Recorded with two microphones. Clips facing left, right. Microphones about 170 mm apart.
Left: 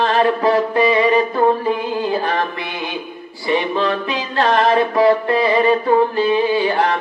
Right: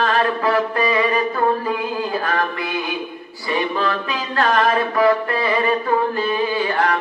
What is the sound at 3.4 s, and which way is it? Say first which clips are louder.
Mantra: left 3 dB; 25° left (ahead or behind).